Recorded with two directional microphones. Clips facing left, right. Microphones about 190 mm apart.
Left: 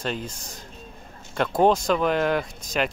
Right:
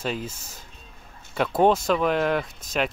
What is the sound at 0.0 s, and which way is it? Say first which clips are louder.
Speech: even; 5° right (ahead or behind).